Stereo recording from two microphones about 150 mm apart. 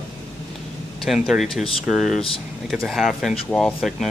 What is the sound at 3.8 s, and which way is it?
Speech, centre (ahead or behind).